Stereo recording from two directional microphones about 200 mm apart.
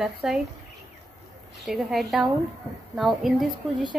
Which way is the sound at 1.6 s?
Centre (ahead or behind).